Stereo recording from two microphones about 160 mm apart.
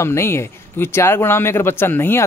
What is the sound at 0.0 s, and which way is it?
Speech, 15° left (ahead or behind).